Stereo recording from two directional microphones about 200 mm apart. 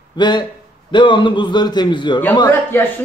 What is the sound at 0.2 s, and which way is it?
A man's voice, 20° left (ahead or behind).